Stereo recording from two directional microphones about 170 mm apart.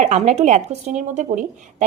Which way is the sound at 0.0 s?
40° right (ahead or behind).